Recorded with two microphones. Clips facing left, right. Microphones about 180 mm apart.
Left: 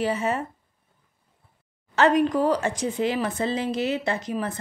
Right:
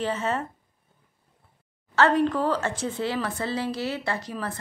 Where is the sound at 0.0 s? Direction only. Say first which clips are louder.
Left 2 dB; 10° left (ahead or behind).